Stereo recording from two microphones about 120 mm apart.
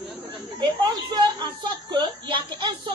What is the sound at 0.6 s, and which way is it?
A woman's voice, 35° right (ahead or behind).